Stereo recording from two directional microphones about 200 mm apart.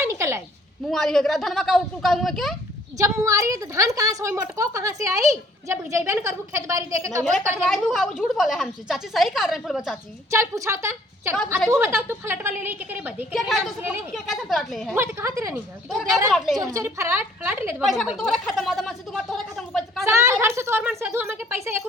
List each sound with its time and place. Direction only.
0.0 s a sound: 15° right (ahead or behind)
0.9 s a woman's voice: centre (ahead or behind)
3.0 s a woman's voice: 15° right (ahead or behind)
7.7 s a woman's voice: centre (ahead or behind)
10.3 s a woman's voice: 15° right (ahead or behind)
14.9 s a woman's voice: 15° right (ahead or behind)
16.3 s a woman's voice: centre (ahead or behind)
16.6 s a woman's voice: 15° right (ahead or behind); by 20.1 s centre (ahead or behind)
20.1 s a woman's voice: 15° right (ahead or behind)